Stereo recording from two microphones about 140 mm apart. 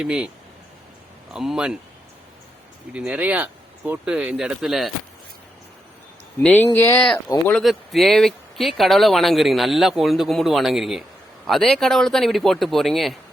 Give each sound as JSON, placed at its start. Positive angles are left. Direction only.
{"t": 0.0, "sound": "speech", "side_deg": -5}
{"t": 1.3, "sound": "speech", "side_deg": -5}
{"t": 2.9, "sound": "speech", "side_deg": -10}
{"t": 6.4, "sound": "speech", "side_deg": 10}
{"t": 7.6, "sound": "speech", "side_deg": 0}